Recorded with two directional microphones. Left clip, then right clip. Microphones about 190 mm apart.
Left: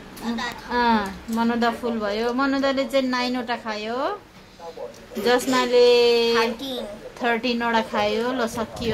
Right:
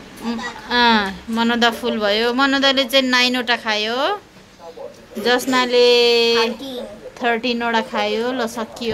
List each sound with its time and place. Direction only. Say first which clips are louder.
0.7 s speech: right 6 dB; 5° right (ahead or behind)
5.5 s speech: right 3 dB; centre (ahead or behind)